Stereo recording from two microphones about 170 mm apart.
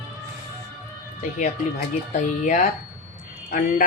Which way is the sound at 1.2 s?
45° left (ahead or behind).